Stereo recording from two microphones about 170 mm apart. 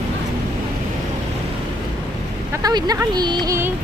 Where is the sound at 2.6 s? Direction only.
20° right (ahead or behind).